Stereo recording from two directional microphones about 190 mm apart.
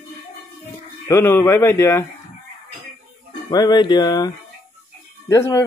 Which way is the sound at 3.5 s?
20° left (ahead or behind).